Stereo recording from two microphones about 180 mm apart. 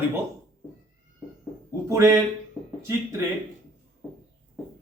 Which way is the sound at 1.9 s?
15° right (ahead or behind).